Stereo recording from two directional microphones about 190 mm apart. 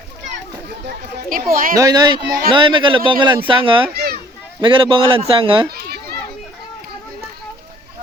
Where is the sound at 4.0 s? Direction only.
50° right (ahead or behind).